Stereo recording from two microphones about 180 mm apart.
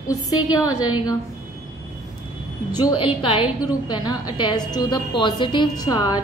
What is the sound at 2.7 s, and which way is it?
A woman's voice, 25° left (ahead or behind).